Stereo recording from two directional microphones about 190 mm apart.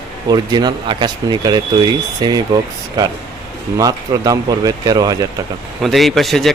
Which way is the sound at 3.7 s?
20° right (ahead or behind).